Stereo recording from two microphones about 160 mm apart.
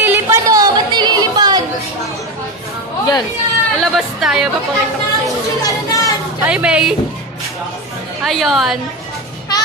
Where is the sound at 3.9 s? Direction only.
5° right (ahead or behind).